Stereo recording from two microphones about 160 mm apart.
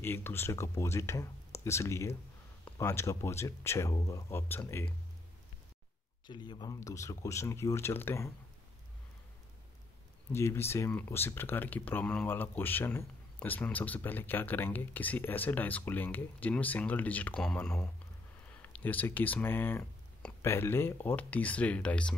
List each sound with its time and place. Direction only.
0.0 s speech: 15° left (ahead or behind)
6.2 s speech: 30° left (ahead or behind)
10.3 s speech: 15° left (ahead or behind)